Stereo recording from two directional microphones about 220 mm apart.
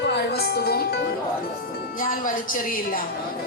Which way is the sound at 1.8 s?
40° left (ahead or behind).